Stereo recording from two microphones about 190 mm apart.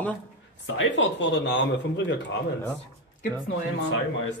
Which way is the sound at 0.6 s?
75° left (ahead or behind).